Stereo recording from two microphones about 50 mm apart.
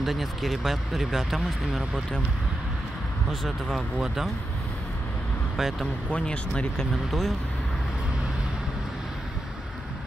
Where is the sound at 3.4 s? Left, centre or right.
Centre.